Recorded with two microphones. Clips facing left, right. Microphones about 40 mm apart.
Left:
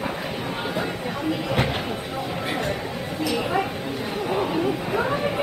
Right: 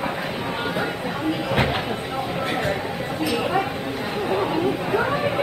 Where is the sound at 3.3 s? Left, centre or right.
Centre.